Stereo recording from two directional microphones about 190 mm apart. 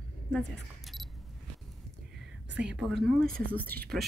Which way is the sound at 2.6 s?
5° right (ahead or behind).